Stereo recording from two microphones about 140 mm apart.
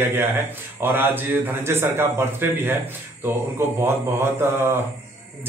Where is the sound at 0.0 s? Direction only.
15° right (ahead or behind).